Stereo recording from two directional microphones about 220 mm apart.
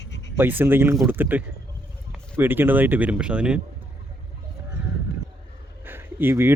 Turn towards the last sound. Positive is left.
turn(degrees=-10)  # may be behind; listen again after turning